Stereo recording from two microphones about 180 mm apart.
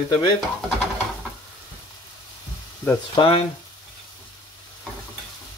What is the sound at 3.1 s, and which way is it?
Speech, 30° left (ahead or behind).